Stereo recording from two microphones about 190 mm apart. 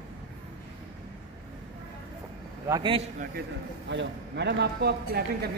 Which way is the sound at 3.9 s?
65° right (ahead or behind).